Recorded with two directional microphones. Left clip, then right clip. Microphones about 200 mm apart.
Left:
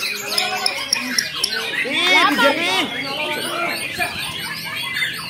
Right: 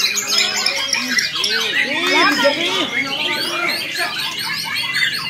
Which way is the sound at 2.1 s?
60° left (ahead or behind).